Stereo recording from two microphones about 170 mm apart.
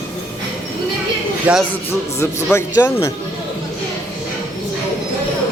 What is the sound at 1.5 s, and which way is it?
Speech, 5° right (ahead or behind).